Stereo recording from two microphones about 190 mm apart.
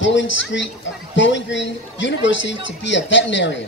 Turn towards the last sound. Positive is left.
turn(degrees=70)  # may be behind; listen again after turning